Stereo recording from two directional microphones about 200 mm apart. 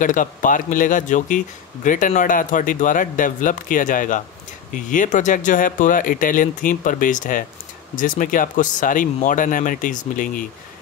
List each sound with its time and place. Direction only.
0.0 s speech: 40° left (ahead or behind)